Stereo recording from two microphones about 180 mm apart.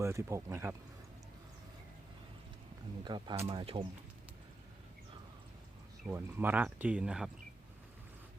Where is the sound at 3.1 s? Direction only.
25° right (ahead or behind).